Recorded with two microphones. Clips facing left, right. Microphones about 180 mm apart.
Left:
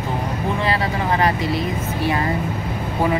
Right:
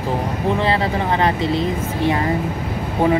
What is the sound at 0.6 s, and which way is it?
Speech, 25° right (ahead or behind).